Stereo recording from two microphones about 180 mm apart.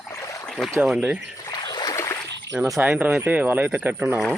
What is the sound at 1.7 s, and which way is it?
Rowboat, 20° left (ahead or behind).